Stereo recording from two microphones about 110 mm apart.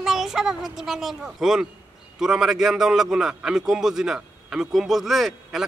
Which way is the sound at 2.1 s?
5° right (ahead or behind).